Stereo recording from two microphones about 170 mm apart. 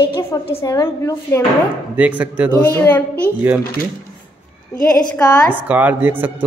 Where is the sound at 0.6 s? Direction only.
15° left (ahead or behind).